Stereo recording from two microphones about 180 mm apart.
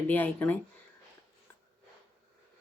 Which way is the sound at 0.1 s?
10° left (ahead or behind).